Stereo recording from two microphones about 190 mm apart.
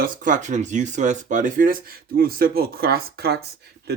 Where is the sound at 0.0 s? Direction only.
45° right (ahead or behind).